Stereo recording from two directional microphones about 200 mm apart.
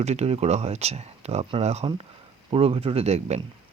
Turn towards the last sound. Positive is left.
turn(degrees=-35)  # may be behind; listen again after turning